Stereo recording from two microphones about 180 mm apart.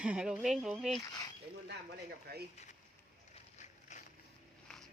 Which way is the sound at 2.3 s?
60° right (ahead or behind).